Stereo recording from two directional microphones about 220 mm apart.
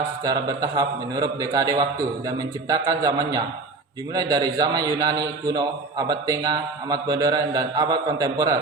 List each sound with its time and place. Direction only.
0.3 s a man's voice: 15° right (ahead or behind)